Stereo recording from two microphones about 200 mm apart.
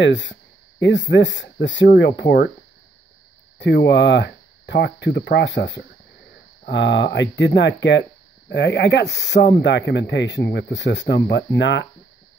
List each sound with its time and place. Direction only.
0.0 s speech: 60° left (ahead or behind)
3.5 s speech: 60° left (ahead or behind)